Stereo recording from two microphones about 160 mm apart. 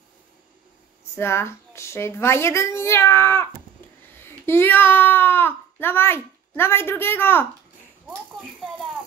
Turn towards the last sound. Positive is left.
turn(degrees=15)  # may be behind; listen again after turning